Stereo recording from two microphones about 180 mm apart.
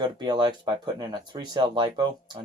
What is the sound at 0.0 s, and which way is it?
Speech, 25° right (ahead or behind).